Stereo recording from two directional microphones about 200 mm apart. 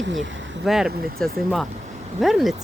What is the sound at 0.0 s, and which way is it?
Speech, 65° right (ahead or behind).